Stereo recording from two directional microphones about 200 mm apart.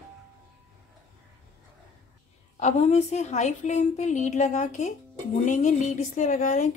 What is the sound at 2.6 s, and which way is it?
A woman's voice, 35° left (ahead or behind).